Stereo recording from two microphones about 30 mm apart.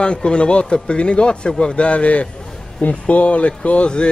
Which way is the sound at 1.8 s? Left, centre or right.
Left.